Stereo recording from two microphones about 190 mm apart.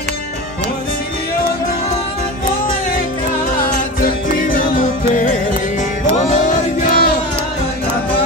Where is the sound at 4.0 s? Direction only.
50° left (ahead or behind).